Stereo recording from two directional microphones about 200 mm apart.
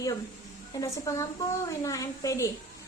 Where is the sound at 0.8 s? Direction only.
15° left (ahead or behind).